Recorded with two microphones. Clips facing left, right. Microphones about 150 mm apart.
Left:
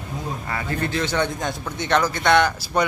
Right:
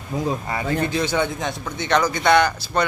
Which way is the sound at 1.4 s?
Centre (ahead or behind).